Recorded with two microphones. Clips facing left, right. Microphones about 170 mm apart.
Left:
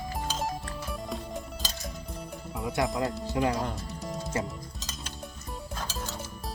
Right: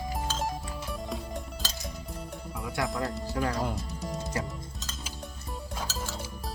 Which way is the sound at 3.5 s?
Centre (ahead or behind).